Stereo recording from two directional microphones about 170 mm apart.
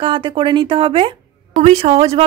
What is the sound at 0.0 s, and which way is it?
Speech, 30° right (ahead or behind).